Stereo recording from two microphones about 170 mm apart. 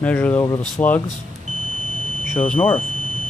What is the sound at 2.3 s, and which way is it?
Speech, 10° left (ahead or behind).